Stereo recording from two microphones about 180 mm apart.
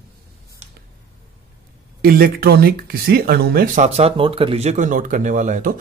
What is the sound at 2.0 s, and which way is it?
Speech, 55° right (ahead or behind).